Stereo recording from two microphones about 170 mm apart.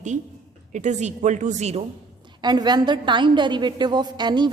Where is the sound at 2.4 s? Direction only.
25° right (ahead or behind).